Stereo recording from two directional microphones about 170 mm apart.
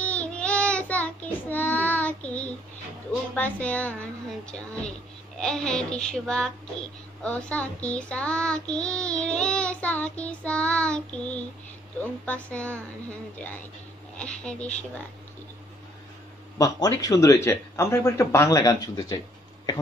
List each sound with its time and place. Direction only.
0.0 s child singing: 10° left (ahead or behind)
5.4 s speech: 5° left (ahead or behind)
7.2 s child singing: 5° left (ahead or behind)
14.1 s child singing: 5° left (ahead or behind)
16.5 s speech: 20° left (ahead or behind)